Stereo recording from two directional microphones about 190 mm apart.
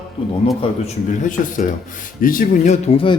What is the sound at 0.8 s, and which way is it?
A man's voice, 45° left (ahead or behind).